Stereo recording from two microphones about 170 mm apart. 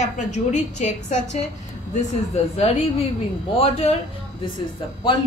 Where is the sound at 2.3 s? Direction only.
40° left (ahead or behind).